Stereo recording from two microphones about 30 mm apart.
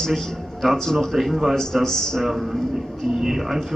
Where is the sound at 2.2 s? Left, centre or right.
Centre.